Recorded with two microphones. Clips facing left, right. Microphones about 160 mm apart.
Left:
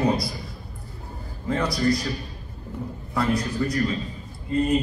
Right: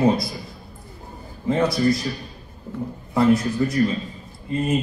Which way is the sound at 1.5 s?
25° right (ahead or behind).